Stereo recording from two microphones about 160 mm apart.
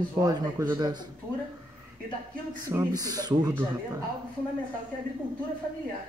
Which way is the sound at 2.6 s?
20° right (ahead or behind).